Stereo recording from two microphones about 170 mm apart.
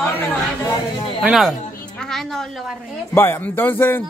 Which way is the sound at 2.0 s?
Centre (ahead or behind).